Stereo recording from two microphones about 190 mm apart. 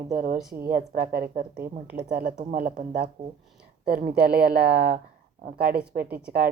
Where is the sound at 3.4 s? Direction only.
5° right (ahead or behind).